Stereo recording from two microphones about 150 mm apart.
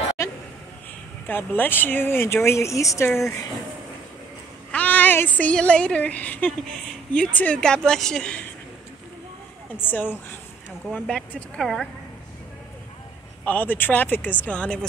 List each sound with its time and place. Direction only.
0.2 s a sound: 20° left (ahead or behind)
1.2 s speech: 10° left (ahead or behind)
4.6 s speech: 10° left (ahead or behind)
9.8 s speech: 10° left (ahead or behind)
13.5 s speech: 10° left (ahead or behind)